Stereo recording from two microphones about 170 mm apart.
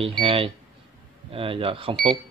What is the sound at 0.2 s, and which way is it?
Speech, 30° right (ahead or behind).